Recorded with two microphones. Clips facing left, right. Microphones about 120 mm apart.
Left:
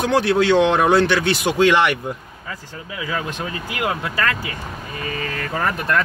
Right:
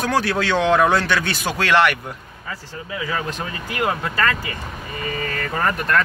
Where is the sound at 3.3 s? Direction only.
10° left (ahead or behind).